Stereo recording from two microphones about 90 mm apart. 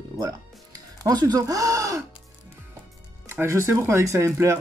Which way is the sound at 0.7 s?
45° right (ahead or behind).